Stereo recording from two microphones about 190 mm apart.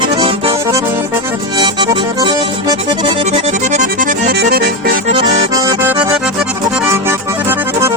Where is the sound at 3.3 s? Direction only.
35° right (ahead or behind).